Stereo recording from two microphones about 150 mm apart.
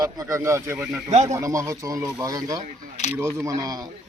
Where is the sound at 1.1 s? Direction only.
50° right (ahead or behind).